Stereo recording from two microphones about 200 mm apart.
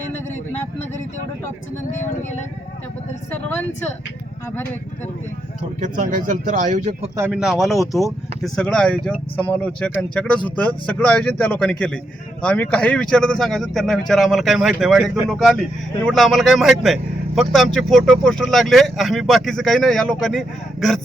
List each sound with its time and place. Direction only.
1.9 s speech: 35° left (ahead or behind)
5.8 s speech: 40° right (ahead or behind)
7.2 s speech: 5° right (ahead or behind)